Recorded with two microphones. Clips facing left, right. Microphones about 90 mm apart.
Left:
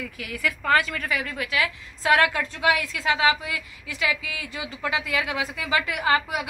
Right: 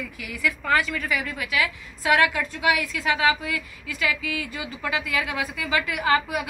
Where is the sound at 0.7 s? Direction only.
45° left (ahead or behind).